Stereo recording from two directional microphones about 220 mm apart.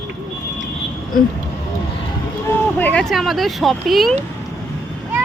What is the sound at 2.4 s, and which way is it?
Speech, 10° left (ahead or behind).